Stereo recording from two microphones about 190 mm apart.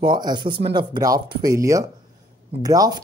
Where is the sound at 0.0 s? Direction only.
25° right (ahead or behind).